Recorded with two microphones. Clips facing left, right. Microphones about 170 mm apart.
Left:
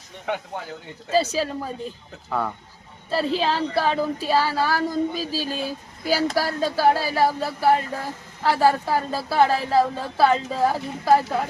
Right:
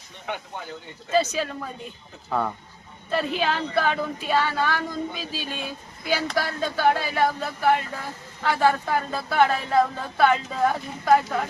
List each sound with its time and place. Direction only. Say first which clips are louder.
1.1 s speech: left 1 dB; 35° left (ahead or behind)
3.1 s speech: left 2 dB; 30° left (ahead or behind)